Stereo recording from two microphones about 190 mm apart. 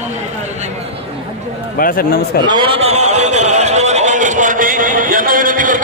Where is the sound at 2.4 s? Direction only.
25° right (ahead or behind); by 5.7 s 45° right (ahead or behind).